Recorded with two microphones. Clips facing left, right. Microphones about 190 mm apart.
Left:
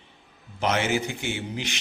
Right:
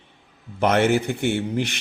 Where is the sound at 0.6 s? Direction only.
60° right (ahead or behind).